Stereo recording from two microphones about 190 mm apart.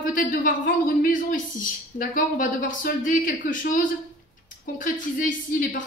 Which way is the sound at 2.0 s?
45° left (ahead or behind).